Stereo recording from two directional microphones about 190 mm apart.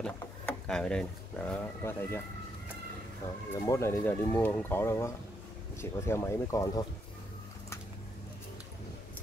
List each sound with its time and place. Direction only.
0.0 s a sound: 5° left (ahead or behind)
1.5 s speech: 10° left (ahead or behind)
3.5 s speech: 20° left (ahead or behind)